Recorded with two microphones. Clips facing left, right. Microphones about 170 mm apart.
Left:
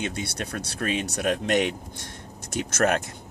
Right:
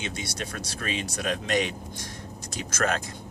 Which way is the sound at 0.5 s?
50° left (ahead or behind).